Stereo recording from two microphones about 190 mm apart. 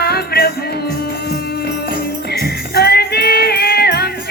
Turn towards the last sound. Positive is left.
turn(degrees=55)  # may be behind; listen again after turning